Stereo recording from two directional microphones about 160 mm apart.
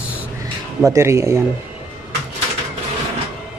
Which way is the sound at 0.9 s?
15° right (ahead or behind).